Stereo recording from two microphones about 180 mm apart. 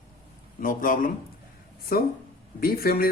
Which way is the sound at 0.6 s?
50° left (ahead or behind).